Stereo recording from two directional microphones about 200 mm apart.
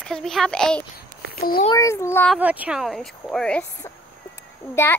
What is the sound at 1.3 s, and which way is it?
Speech, 50° left (ahead or behind).